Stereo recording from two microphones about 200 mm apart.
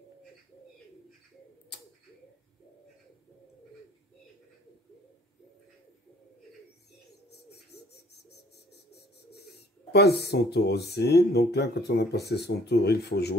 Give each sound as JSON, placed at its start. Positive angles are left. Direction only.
{"t": 7.2, "sound": "bird", "side_deg": 55}
{"t": 9.9, "sound": "speech", "side_deg": 55}